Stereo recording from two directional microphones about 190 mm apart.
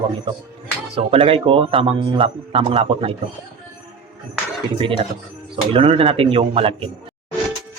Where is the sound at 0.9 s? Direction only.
30° right (ahead or behind).